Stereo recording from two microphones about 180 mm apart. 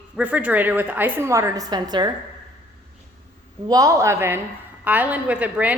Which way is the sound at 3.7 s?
20° right (ahead or behind).